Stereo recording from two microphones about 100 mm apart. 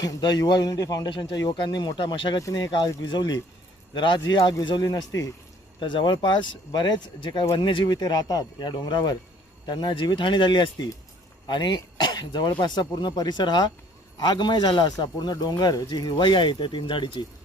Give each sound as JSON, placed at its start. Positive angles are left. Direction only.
{"t": 0.0, "sound": "a man's voice", "side_deg": 40}
{"t": 2.4, "sound": "a man's voice", "side_deg": 40}
{"t": 5.8, "sound": "a man's voice", "side_deg": 50}